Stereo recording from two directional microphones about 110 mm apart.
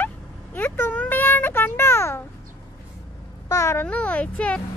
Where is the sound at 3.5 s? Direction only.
25° left (ahead or behind).